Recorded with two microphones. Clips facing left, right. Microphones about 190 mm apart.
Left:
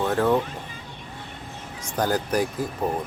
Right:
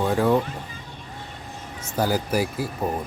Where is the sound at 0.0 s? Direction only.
10° right (ahead or behind).